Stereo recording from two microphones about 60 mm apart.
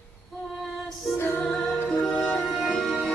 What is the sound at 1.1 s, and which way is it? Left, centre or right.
Music, left.